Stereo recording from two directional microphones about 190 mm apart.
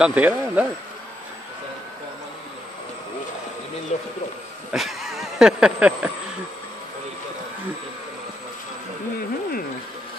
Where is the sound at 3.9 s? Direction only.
35° left (ahead or behind).